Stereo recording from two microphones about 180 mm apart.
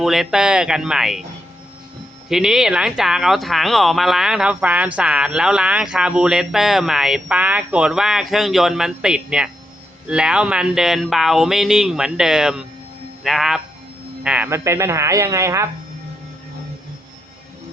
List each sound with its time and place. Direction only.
0.0 s speech: centre (ahead or behind)
2.3 s speech: 5° right (ahead or behind)